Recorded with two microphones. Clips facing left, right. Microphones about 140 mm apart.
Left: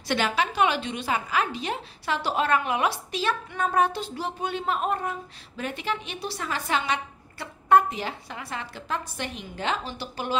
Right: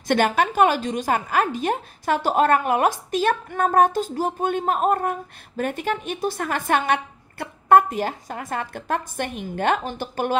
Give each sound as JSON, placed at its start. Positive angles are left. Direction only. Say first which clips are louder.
{"t": 0.1, "sound": "a woman's voice", "louder": "right 6 dB", "side_deg": -50}